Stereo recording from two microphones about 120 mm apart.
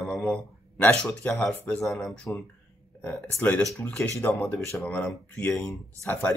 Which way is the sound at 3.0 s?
15° left (ahead or behind).